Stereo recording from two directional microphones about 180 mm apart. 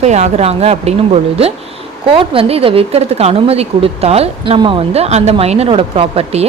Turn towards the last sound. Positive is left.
turn(degrees=-35)  # may be behind; listen again after turning